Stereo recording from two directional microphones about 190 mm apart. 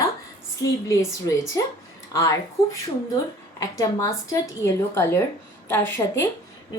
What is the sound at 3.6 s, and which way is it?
A woman's voice, 15° left (ahead or behind).